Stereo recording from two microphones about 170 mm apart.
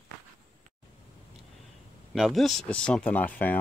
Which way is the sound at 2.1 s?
Centre (ahead or behind).